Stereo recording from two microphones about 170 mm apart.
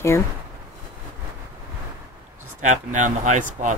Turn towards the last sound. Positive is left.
turn(degrees=-50)  # may be behind; listen again after turning